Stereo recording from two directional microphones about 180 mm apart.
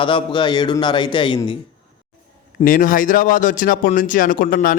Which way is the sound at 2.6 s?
50° left (ahead or behind).